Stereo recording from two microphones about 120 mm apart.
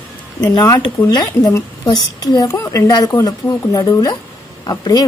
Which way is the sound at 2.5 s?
25° left (ahead or behind).